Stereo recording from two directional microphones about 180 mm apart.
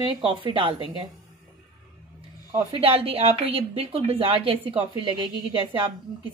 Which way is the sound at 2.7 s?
30° right (ahead or behind).